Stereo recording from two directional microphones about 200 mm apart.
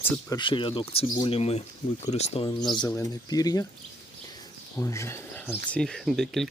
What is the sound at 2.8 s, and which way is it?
Speech, 15° left (ahead or behind).